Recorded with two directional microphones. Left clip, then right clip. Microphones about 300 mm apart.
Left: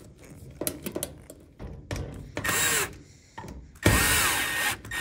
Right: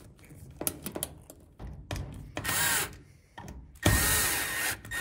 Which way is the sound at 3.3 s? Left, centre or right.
Centre.